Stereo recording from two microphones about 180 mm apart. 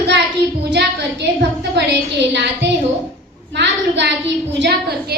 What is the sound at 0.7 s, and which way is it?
A woman's voice, 70° right (ahead or behind).